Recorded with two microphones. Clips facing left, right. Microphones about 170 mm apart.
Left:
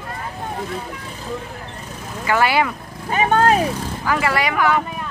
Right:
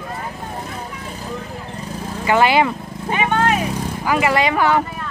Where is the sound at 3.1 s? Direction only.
40° left (ahead or behind).